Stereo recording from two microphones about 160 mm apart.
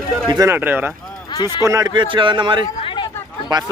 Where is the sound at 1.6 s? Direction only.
20° right (ahead or behind).